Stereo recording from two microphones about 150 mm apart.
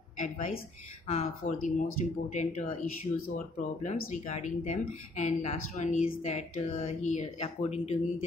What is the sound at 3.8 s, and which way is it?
A woman's voice, 50° left (ahead or behind).